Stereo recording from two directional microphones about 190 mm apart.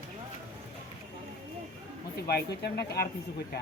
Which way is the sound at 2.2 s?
55° left (ahead or behind).